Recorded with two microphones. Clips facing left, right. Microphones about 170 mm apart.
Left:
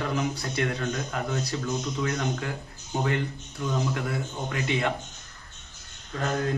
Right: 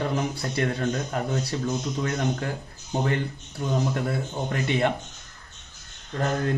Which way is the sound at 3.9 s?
40° right (ahead or behind).